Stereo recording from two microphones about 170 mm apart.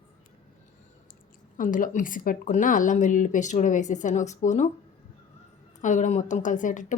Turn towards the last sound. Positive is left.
turn(degrees=50)  # may be behind; listen again after turning